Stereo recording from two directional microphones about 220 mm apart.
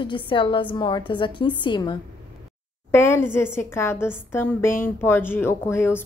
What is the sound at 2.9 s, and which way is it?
A woman's voice, 10° left (ahead or behind).